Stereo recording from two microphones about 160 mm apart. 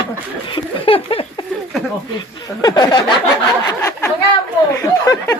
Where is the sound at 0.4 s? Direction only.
35° left (ahead or behind).